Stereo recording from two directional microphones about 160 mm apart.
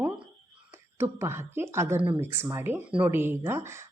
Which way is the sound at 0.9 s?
15° right (ahead or behind).